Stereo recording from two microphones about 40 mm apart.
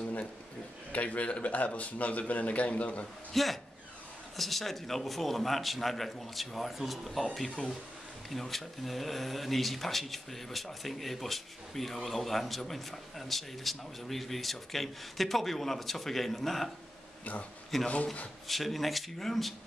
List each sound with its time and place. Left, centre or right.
0.9 s speech: left
3.3 s speech: centre
7.3 s speech: centre
17.2 s speech: left
17.7 s speech: centre